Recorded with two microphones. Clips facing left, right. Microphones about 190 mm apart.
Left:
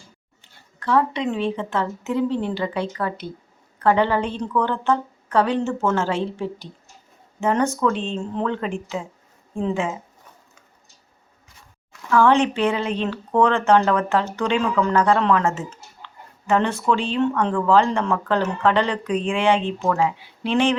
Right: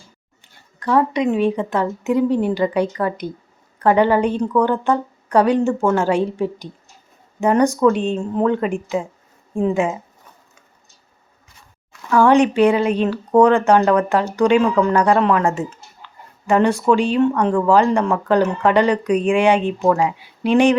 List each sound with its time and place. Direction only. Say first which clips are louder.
0.8 s speech: right 3 dB; 15° right (ahead or behind)
12.1 s speech: right 4 dB; 10° right (ahead or behind)